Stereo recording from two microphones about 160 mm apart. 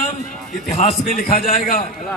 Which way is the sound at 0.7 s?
45° left (ahead or behind).